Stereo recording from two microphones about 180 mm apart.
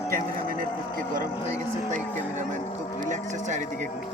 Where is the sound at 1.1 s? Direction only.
45° right (ahead or behind).